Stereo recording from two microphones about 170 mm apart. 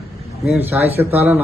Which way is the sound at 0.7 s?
10° right (ahead or behind).